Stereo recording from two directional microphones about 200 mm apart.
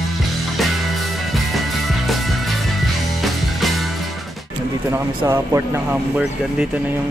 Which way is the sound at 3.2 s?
Centre (ahead or behind).